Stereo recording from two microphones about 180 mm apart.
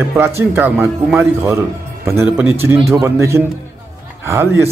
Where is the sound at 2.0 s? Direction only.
15° right (ahead or behind).